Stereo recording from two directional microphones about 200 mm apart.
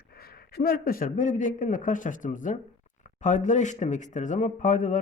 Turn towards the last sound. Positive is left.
turn(degrees=40)  # may be behind; listen again after turning